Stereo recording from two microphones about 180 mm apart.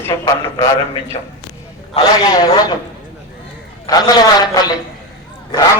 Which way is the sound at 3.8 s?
20° left (ahead or behind).